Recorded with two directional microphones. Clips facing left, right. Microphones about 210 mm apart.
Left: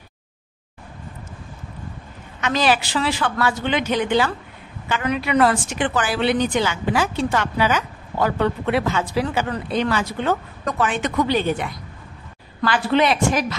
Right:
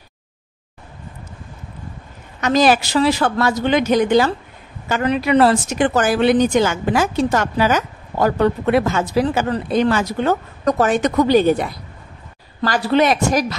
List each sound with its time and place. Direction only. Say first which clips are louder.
2.4 s speech: right 5 dB; 45° right (ahead or behind)